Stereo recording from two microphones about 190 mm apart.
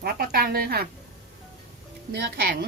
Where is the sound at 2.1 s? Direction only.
60° right (ahead or behind).